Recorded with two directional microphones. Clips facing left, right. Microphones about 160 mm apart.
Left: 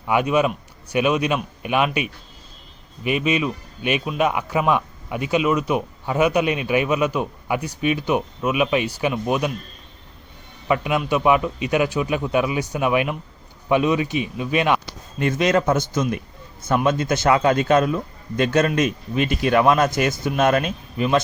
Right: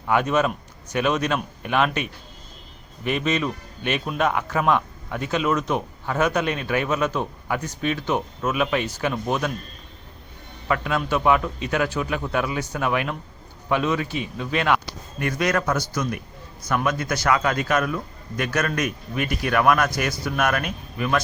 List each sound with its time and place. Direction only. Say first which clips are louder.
0.1 s speech: left 2 dB; 15° left (ahead or behind)
10.7 s speech: left 3 dB; 15° left (ahead or behind)